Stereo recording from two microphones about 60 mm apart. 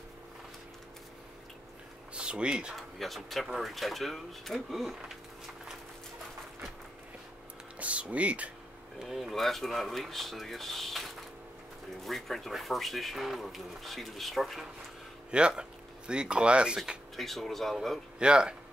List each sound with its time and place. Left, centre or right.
2.1 s speech: centre
2.7 s speech: centre
7.8 s speech: right
9.0 s speech: centre
15.3 s speech: centre
17.2 s speech: centre
18.2 s speech: centre